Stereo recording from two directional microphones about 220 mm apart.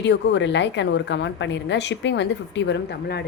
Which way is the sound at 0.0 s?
55° left (ahead or behind).